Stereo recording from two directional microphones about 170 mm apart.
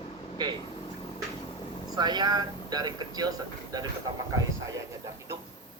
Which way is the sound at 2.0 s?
25° right (ahead or behind).